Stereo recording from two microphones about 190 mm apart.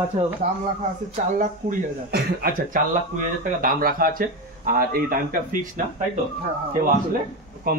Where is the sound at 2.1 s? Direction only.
55° right (ahead or behind).